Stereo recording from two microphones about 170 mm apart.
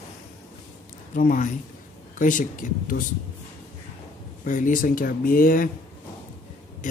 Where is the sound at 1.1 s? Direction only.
50° left (ahead or behind).